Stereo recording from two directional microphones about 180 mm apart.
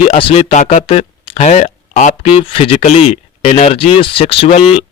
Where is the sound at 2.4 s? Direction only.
30° left (ahead or behind).